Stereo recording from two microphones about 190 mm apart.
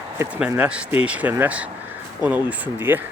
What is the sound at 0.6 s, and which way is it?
Speech, 5° right (ahead or behind).